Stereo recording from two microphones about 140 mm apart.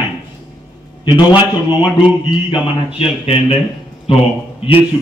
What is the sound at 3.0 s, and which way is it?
A man's voice, 40° left (ahead or behind).